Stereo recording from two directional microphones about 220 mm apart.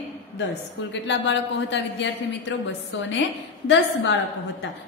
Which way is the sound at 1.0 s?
55° left (ahead or behind).